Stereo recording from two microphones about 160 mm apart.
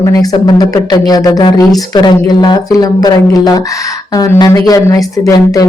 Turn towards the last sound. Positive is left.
turn(degrees=20)  # may be behind; listen again after turning